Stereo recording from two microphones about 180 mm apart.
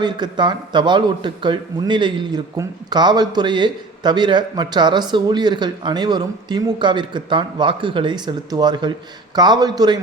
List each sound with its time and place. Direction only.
0.0 s speech: 25° right (ahead or behind)